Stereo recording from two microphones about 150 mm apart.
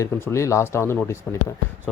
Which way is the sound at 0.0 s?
20° left (ahead or behind).